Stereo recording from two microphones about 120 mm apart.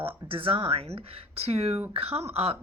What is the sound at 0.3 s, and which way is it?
Speech, 50° right (ahead or behind).